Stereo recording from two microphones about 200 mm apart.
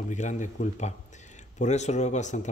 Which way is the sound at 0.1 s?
40° left (ahead or behind).